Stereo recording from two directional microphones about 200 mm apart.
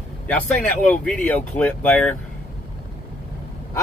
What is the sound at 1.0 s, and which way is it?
Speech, 5° left (ahead or behind).